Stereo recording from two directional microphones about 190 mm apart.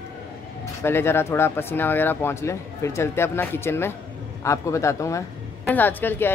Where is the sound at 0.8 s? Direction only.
10° left (ahead or behind).